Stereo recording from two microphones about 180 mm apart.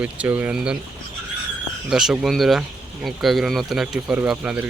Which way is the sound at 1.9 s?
Centre (ahead or behind).